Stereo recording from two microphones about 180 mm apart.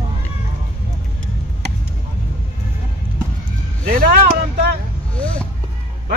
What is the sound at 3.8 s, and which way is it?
Speech, 50° right (ahead or behind).